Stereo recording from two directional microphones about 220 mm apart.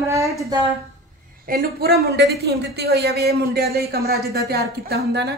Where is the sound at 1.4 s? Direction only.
45° right (ahead or behind).